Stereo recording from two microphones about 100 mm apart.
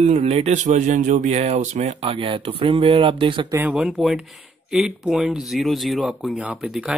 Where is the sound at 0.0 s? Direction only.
90° right; by 3.4 s 60° right (ahead or behind).